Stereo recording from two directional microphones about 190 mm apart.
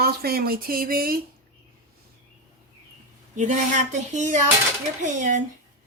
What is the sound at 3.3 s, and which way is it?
Speech, 40° right (ahead or behind).